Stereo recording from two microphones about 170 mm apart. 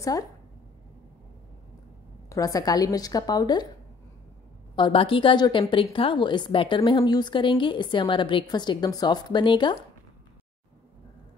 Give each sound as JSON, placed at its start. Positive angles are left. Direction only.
{"t": 2.2, "sound": "a woman's voice", "side_deg": 20}
{"t": 4.7, "sound": "a woman's voice", "side_deg": 30}